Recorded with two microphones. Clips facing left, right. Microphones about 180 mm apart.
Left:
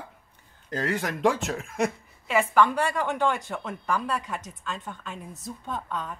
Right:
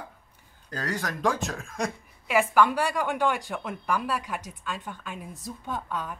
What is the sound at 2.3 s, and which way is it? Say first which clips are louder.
A woman's voice: even; 5° right (ahead or behind).